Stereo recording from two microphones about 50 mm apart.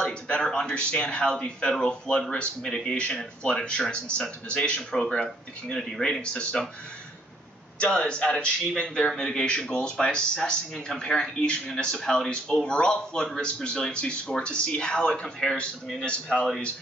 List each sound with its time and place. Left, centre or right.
0.0 s speech: centre
4.9 s speech: centre
7.8 s speech: centre